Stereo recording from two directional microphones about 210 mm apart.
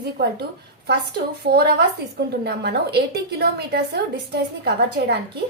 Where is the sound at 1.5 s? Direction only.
50° right (ahead or behind).